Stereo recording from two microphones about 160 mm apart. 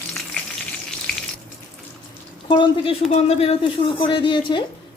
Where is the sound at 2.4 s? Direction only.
30° left (ahead or behind).